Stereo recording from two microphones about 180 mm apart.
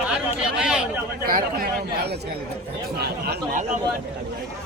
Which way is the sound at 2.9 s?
65° right (ahead or behind).